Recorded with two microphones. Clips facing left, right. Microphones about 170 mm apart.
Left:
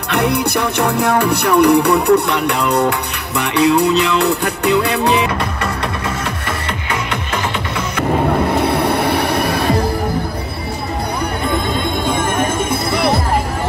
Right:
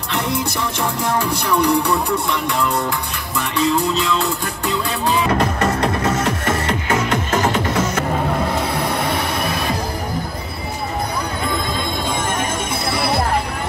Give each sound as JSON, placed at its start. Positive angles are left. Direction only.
{"t": 0.1, "sound": "music", "side_deg": 65}
{"t": 5.4, "sound": "music", "side_deg": -40}
{"t": 8.5, "sound": "music", "side_deg": 65}